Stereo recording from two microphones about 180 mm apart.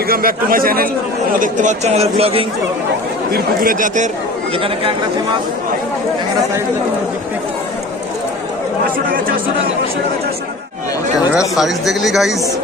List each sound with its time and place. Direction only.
0.1 s a man's voice: 55° right (ahead or behind); by 2.4 s 35° right (ahead or behind)
3.3 s speech: 50° right (ahead or behind)
4.6 s a man's voice: 30° right (ahead or behind)
11.5 s speech: centre (ahead or behind)